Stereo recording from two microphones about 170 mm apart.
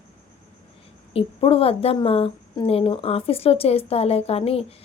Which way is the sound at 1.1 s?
35° left (ahead or behind).